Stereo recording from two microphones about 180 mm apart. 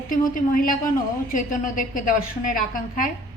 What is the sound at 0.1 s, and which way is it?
A woman's voice, 50° left (ahead or behind).